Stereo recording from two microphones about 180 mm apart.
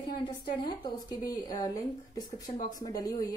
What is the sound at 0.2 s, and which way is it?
Speech, 25° left (ahead or behind).